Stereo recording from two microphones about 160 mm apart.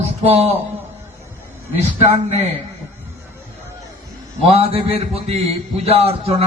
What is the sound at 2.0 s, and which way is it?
Speech, 40° right (ahead or behind).